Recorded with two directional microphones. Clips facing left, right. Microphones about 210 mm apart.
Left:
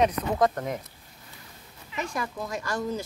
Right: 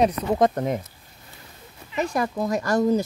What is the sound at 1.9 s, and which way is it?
Speech, 40° right (ahead or behind).